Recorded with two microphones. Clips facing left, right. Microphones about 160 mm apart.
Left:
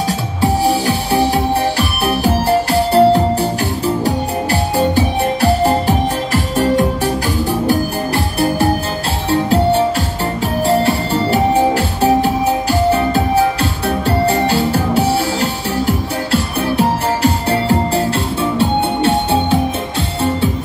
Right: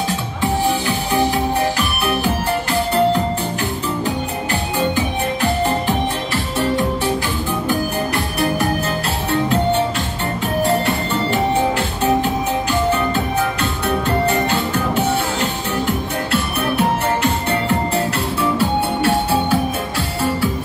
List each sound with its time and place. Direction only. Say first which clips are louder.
0.4 s music: left 4 dB; 35° left (ahead or behind)
9.3 s music: left 4 dB; 35° left (ahead or behind)